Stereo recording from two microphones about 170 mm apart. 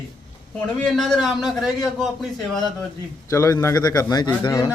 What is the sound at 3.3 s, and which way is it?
A man's voice, 20° left (ahead or behind).